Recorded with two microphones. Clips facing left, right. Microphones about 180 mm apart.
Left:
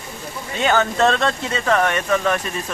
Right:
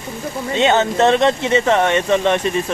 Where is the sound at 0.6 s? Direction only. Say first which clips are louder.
Right 3 dB; 25° right (ahead or behind).